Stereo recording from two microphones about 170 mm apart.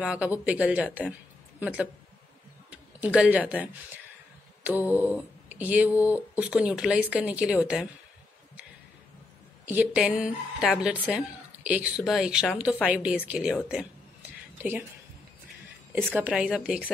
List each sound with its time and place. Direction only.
0.0 s speech: 5° right (ahead or behind)
9.7 s speech: 5° right (ahead or behind)
16.1 s speech: 10° right (ahead or behind)